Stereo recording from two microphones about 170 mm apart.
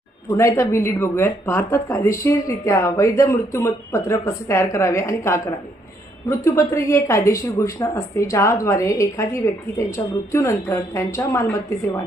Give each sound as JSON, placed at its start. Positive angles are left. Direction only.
{"t": 0.3, "sound": "speech", "side_deg": 15}
{"t": 6.4, "sound": "speech", "side_deg": 20}